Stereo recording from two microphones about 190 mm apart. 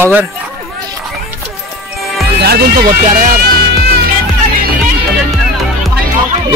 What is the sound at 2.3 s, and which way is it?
Speech, 55° right (ahead or behind).